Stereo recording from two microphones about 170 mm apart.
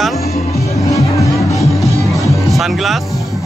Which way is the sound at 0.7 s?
20° left (ahead or behind).